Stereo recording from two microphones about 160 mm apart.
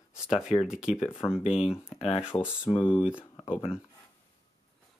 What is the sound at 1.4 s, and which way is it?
Speech, 35° left (ahead or behind).